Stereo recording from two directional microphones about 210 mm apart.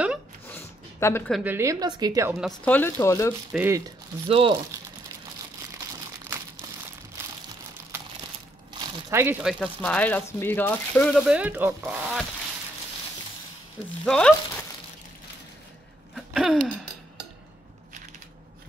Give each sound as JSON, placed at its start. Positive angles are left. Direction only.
{"t": 0.5, "sound": "a sound", "side_deg": 10}
{"t": 1.3, "sound": "a woman's voice", "side_deg": -10}
{"t": 2.4, "sound": "speech", "side_deg": 5}
{"t": 3.5, "sound": "a woman's voice", "side_deg": -10}
{"t": 4.3, "sound": "speech", "side_deg": -25}
{"t": 8.7, "sound": "crumpling", "side_deg": -25}
{"t": 9.1, "sound": "a woman's voice", "side_deg": -10}
{"t": 11.2, "sound": "speech", "side_deg": -5}
{"t": 14.0, "sound": "speech", "side_deg": 5}
{"t": 16.2, "sound": "a sound", "side_deg": 0}